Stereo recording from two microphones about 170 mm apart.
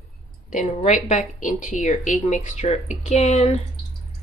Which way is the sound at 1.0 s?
45° left (ahead or behind).